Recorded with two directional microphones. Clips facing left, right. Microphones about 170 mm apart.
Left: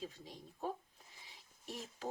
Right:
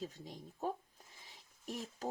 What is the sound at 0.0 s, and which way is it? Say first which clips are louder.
Speech: right 2 dB; 45° right (ahead or behind).